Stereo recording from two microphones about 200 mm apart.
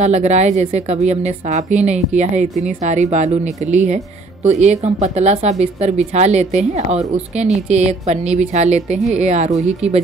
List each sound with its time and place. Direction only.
0.0 s speech: 35° right (ahead or behind)